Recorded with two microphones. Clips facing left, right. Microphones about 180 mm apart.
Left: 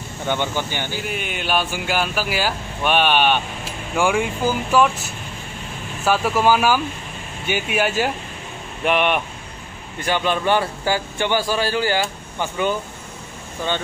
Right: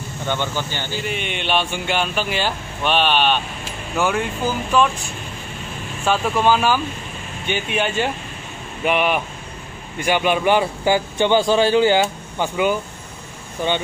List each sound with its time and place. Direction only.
0.3 s speech: 15° left (ahead or behind)
1.0 s speech: 5° left (ahead or behind)
10.0 s speech: 15° right (ahead or behind)